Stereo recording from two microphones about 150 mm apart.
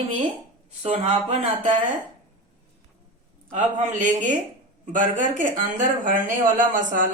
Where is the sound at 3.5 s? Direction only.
55° right (ahead or behind).